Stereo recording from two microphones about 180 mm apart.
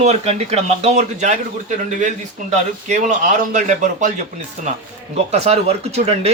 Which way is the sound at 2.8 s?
40° right (ahead or behind).